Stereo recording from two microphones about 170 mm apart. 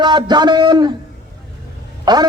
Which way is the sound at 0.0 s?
25° right (ahead or behind).